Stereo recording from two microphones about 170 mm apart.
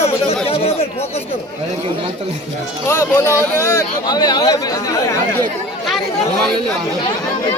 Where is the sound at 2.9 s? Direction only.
15° left (ahead or behind).